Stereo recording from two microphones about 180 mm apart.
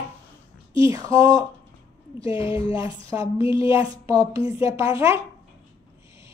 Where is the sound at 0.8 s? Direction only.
20° right (ahead or behind).